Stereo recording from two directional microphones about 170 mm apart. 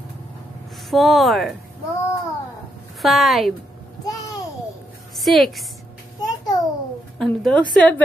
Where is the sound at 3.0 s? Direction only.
Centre (ahead or behind).